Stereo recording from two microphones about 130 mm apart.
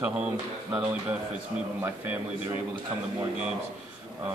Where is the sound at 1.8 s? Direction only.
15° right (ahead or behind).